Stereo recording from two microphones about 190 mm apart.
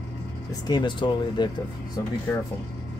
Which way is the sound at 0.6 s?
25° left (ahead or behind).